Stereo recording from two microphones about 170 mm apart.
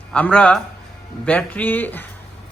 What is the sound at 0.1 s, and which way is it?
A man's voice, 5° left (ahead or behind).